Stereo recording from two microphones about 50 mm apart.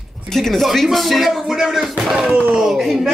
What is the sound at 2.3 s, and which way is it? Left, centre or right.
Speech, right.